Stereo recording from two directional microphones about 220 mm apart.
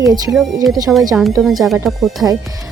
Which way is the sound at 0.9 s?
Centre (ahead or behind).